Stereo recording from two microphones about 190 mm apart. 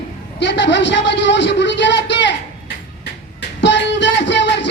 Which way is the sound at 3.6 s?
70° left (ahead or behind).